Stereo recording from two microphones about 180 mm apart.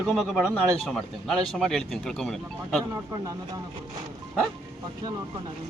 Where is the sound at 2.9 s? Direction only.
15° right (ahead or behind).